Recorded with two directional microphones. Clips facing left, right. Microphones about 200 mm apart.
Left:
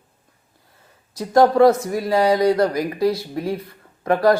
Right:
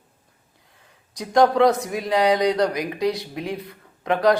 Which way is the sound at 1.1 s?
5° left (ahead or behind).